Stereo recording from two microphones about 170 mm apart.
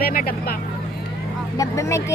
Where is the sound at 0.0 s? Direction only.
60° left (ahead or behind).